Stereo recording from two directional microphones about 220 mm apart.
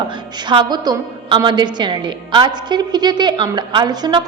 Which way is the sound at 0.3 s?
20° right (ahead or behind).